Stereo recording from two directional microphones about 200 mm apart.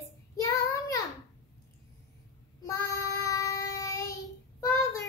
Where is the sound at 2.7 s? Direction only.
15° left (ahead or behind).